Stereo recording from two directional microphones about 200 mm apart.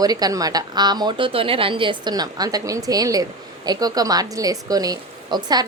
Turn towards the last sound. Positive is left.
turn(degrees=-20)  # may be behind; listen again after turning